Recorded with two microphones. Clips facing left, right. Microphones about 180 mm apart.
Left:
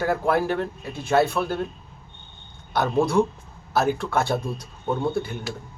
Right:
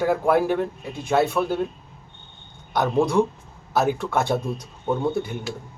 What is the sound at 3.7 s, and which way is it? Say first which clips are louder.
Speech: right 1 dB; 15° right (ahead or behind).